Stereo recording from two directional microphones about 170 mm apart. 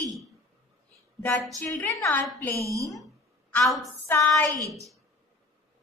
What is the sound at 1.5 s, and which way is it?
A woman's voice, 10° left (ahead or behind).